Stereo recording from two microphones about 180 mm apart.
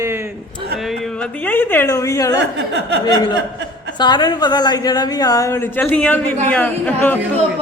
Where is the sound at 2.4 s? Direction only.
75° right (ahead or behind).